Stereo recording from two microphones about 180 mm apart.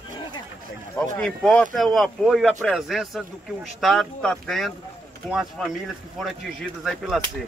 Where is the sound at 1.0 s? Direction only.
5° left (ahead or behind).